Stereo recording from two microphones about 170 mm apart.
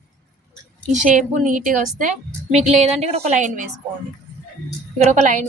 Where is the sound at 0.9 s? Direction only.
50° right (ahead or behind).